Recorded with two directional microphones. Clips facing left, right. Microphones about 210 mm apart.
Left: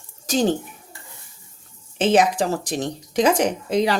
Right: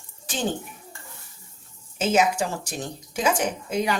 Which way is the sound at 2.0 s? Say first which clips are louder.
Left 4 dB; 35° left (ahead or behind).